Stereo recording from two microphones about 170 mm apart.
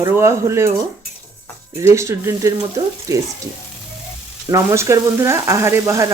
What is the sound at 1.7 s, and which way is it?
Speech, 15° right (ahead or behind).